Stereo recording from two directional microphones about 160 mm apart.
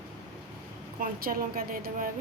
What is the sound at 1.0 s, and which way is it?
A woman's voice, 65° right (ahead or behind).